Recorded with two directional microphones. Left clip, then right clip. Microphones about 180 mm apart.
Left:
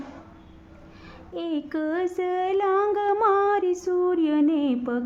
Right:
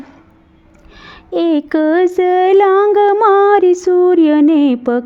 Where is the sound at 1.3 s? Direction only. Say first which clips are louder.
Right 15 dB; 45° right (ahead or behind).